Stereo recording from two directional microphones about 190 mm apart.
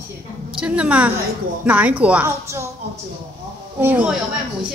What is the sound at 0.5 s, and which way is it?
A woman's voice, 5° right (ahead or behind).